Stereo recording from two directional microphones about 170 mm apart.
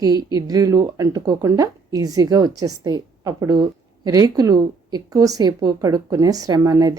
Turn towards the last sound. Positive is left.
turn(degrees=-20)  # may be behind; listen again after turning